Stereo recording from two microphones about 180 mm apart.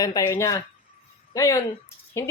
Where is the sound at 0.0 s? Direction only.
20° left (ahead or behind).